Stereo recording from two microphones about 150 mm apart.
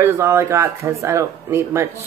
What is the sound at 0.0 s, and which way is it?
Speech, 20° right (ahead or behind).